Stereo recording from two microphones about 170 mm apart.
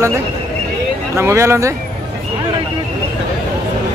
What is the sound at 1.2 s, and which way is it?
Speech, 15° right (ahead or behind).